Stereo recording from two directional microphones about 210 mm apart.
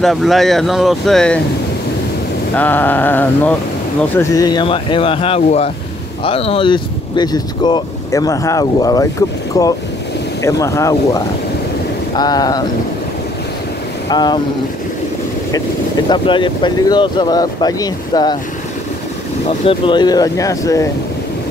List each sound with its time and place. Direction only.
0.0 s speech: centre (ahead or behind)
2.5 s speech: 10° left (ahead or behind)
14.0 s speech: 20° left (ahead or behind)
16.1 s speech: 20° left (ahead or behind)
19.4 s speech: 25° left (ahead or behind)